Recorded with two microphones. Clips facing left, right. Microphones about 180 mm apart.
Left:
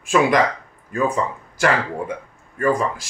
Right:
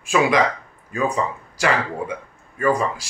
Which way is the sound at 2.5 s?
50° left (ahead or behind).